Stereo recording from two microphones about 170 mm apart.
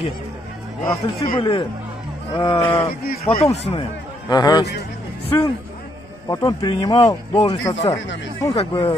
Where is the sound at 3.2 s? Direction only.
35° left (ahead or behind).